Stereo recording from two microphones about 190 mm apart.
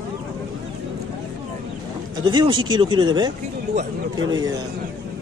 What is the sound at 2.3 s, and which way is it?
Speech, 25° right (ahead or behind).